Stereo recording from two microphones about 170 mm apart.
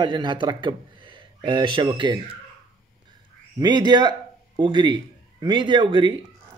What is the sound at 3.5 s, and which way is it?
A man's voice, 25° right (ahead or behind).